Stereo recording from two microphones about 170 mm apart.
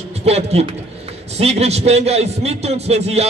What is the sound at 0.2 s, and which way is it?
Speech, 40° right (ahead or behind).